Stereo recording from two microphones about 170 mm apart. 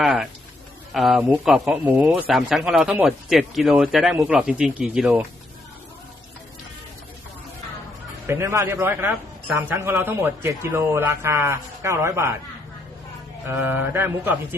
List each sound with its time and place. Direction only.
0.0 s speech: 5° right (ahead or behind)
8.3 s a man's voice: 15° right (ahead or behind)
13.5 s a man's voice: 10° right (ahead or behind)